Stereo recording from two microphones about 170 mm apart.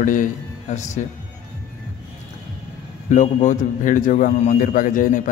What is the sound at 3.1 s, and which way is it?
A man's voice, 45° left (ahead or behind).